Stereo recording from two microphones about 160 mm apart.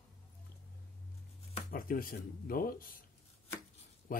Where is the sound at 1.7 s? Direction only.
65° left (ahead or behind).